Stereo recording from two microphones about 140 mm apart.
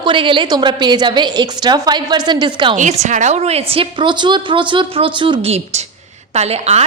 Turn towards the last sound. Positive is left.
turn(degrees=-50)  # may be behind; listen again after turning